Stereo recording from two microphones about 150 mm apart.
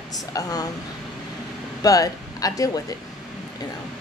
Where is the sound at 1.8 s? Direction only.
25° left (ahead or behind).